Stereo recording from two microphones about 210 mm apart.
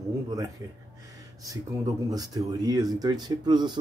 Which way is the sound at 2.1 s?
20° right (ahead or behind).